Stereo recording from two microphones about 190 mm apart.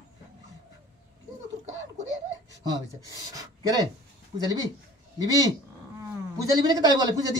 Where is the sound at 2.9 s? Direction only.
20° right (ahead or behind).